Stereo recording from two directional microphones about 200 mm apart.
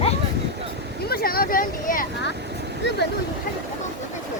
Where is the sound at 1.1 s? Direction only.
50° left (ahead or behind).